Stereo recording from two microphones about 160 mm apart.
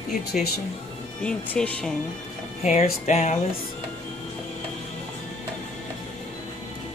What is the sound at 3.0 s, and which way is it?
Speech, 45° left (ahead or behind).